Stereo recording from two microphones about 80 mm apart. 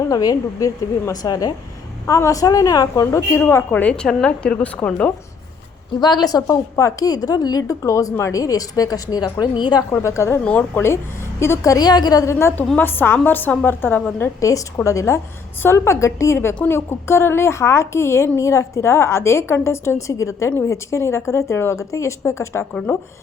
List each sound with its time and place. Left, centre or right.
0.1 s a woman's voice: left
2.0 s a woman's voice: left
3.4 s speech: left
6.0 s a woman's voice: left
9.9 s a woman's voice: left
10.4 s speech: centre
10.8 s a woman's voice: left
11.7 s a woman's voice: left
12.2 s a woman's voice: left